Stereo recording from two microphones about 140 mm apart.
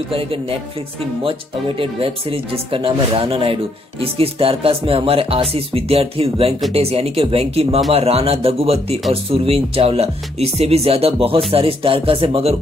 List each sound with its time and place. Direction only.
0.1 s speech: 40° right (ahead or behind)
1.8 s speech: 40° right (ahead or behind)